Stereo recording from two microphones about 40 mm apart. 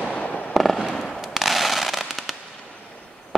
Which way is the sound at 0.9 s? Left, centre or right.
Centre.